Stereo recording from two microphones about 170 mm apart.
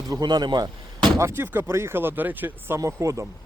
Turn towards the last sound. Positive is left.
turn(degrees=-20)  # may be behind; listen again after turning